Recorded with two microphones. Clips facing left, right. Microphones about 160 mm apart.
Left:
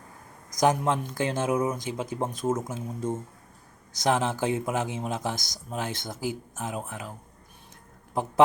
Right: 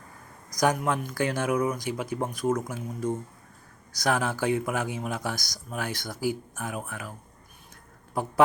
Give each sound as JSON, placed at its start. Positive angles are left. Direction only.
{"t": 0.5, "sound": "speech", "side_deg": 25}